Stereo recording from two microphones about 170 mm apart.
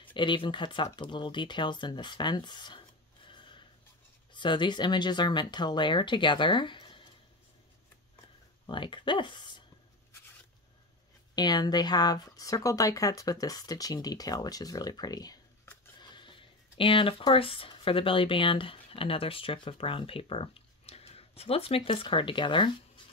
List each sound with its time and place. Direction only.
0.1 s speech: 30° left (ahead or behind)
3.3 s snort: 30° left (ahead or behind)
4.3 s speech: 25° left (ahead or behind)
8.6 s speech: 30° left (ahead or behind)
11.3 s speech: 25° left (ahead or behind)